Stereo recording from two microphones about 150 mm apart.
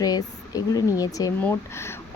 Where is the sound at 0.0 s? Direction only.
25° left (ahead or behind).